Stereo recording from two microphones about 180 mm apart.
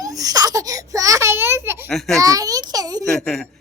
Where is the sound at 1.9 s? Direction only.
Centre (ahead or behind).